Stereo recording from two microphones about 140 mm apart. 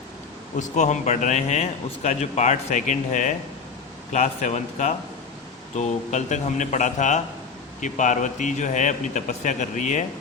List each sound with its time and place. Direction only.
0.5 s a man's voice: 60° left (ahead or behind)